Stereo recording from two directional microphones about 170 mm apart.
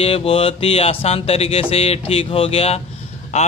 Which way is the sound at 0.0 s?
35° left (ahead or behind).